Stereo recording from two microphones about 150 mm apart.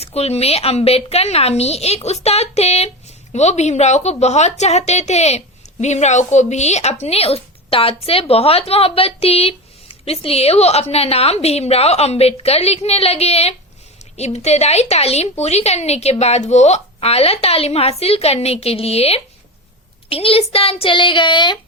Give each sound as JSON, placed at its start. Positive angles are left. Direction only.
{"t": 0.0, "sound": "a woman's voice", "side_deg": 45}